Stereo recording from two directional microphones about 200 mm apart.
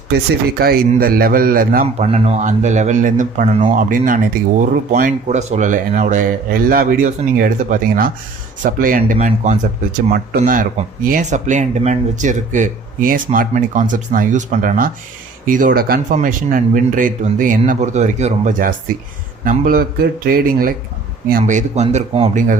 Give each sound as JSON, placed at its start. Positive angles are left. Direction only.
{"t": 0.6, "sound": "a man's voice", "side_deg": -50}